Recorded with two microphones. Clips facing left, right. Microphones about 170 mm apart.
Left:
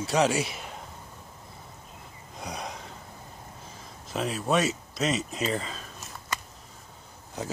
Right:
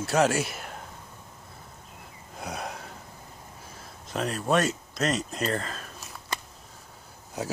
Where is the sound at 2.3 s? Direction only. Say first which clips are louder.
Right 1 dB; 5° right (ahead or behind).